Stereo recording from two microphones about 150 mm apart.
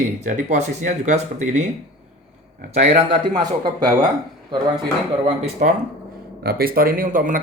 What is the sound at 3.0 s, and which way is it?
Speech, 30° right (ahead or behind).